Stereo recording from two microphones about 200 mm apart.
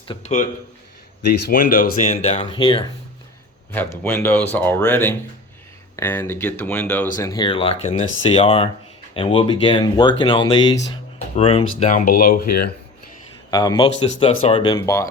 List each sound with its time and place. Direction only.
0.1 s a man's voice: 35° left (ahead or behind)
1.3 s speech: 45° left (ahead or behind)
2.0 s speech: 30° left (ahead or behind)
3.7 s speech: 10° left (ahead or behind); by 11.6 s 30° left (ahead or behind)
11.8 s speech: 40° left (ahead or behind)
13.5 s speech: 20° left (ahead or behind)
14.8 s speech: 15° left (ahead or behind)